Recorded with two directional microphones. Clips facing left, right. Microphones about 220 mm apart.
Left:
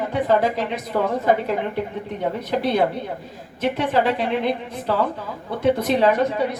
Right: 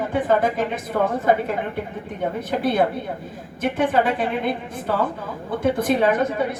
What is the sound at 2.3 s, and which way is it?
A woman's voice, 50° right (ahead or behind).